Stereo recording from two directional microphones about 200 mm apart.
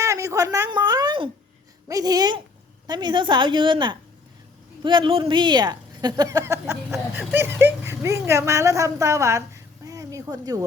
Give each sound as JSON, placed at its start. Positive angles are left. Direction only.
{"t": 0.0, "sound": "a woman's voice", "side_deg": -15}